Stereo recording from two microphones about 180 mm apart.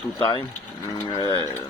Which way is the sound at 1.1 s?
25° left (ahead or behind).